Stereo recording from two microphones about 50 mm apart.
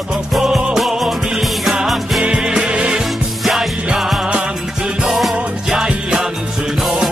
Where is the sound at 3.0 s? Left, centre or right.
Centre.